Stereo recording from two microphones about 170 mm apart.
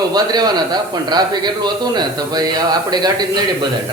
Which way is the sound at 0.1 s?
25° right (ahead or behind).